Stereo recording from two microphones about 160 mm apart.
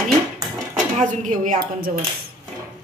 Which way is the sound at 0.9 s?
50° right (ahead or behind).